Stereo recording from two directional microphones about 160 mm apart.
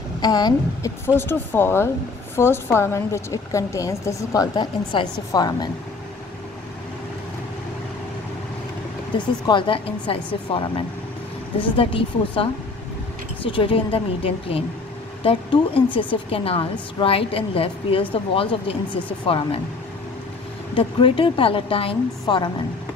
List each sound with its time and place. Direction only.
0.2 s a woman's voice: 25° left (ahead or behind)
9.1 s speech: 30° left (ahead or behind)
20.7 s speech: 35° left (ahead or behind)